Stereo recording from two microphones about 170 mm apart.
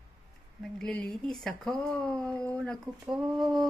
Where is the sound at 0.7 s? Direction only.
5° left (ahead or behind).